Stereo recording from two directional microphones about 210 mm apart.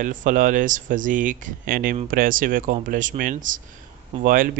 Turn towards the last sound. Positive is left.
turn(degrees=-40)  # may be behind; listen again after turning